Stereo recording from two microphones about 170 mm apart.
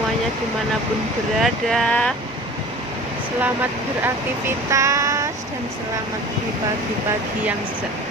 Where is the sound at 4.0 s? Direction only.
15° right (ahead or behind).